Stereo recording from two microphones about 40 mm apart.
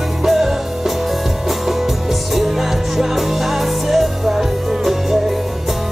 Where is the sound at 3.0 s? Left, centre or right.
Centre.